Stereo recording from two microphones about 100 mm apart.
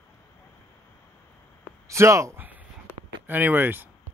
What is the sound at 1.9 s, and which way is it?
Speech, 30° right (ahead or behind).